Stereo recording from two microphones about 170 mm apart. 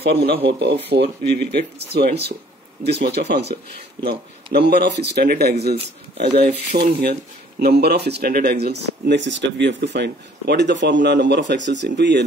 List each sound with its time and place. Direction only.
0.0 s speech: 70° right (ahead or behind)
6.7 s speech: 50° right (ahead or behind)
7.5 s speech: 70° right (ahead or behind); by 12.3 s 90° right